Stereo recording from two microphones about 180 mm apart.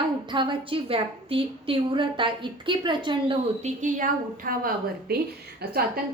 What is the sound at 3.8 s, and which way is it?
A woman's voice, 45° right (ahead or behind).